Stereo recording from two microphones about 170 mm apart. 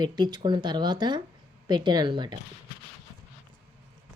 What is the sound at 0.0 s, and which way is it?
A woman's voice, 25° right (ahead or behind).